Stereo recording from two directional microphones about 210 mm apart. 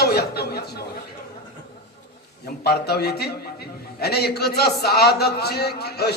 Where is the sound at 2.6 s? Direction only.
50° left (ahead or behind).